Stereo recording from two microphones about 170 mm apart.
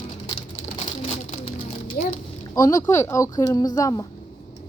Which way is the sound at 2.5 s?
20° left (ahead or behind).